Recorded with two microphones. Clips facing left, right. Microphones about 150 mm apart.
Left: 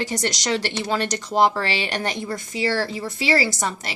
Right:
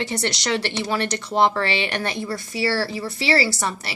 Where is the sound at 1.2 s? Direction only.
10° left (ahead or behind).